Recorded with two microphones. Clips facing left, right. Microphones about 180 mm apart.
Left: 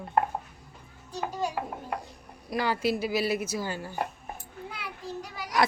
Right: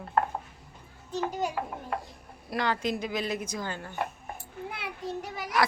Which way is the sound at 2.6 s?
10° left (ahead or behind).